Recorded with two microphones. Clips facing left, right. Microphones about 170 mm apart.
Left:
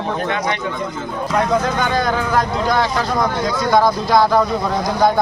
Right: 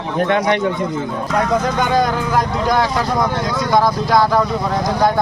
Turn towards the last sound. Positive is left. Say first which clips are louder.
# even
turn(degrees=0)  # may be behind; listen again after turning